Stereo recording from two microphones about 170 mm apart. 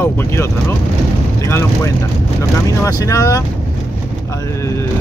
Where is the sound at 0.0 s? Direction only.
15° left (ahead or behind).